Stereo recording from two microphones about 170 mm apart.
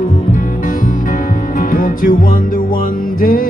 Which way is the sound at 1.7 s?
55° left (ahead or behind).